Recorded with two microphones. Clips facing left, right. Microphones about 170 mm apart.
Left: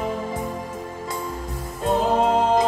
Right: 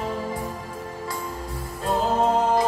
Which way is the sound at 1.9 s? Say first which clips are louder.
Left 2 dB; 20° left (ahead or behind).